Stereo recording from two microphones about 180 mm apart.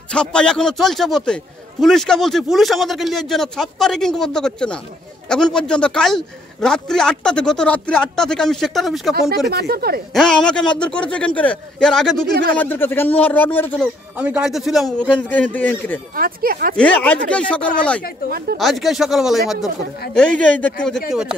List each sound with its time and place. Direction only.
0.1 s a man's voice: 5° left (ahead or behind)
9.5 s speech: 60° right (ahead or behind)
10.1 s a man's voice: 5° left (ahead or behind)
14.1 s a man's voice: 5° right (ahead or behind); by 16.0 s 10° left (ahead or behind)
16.2 s speech: 55° right (ahead or behind)
16.7 s a man's voice: 5° left (ahead or behind)
21.1 s a man's voice: 5° right (ahead or behind)